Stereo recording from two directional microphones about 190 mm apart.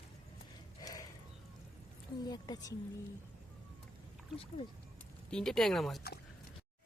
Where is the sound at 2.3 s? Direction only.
20° left (ahead or behind).